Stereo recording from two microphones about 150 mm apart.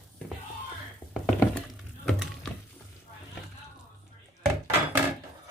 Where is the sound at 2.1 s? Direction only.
5° left (ahead or behind).